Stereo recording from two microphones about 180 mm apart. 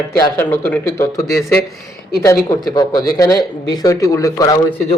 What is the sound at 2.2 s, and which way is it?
Speech, 20° left (ahead or behind).